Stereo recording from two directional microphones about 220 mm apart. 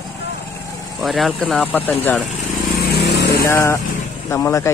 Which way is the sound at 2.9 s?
45° left (ahead or behind).